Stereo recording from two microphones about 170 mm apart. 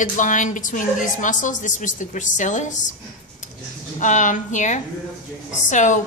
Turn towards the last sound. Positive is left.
turn(degrees=45)  # may be behind; listen again after turning